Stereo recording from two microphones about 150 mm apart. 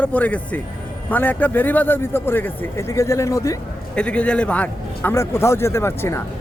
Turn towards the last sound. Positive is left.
turn(degrees=15)  # may be behind; listen again after turning